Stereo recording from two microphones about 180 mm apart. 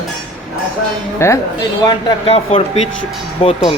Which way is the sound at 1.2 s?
15° left (ahead or behind).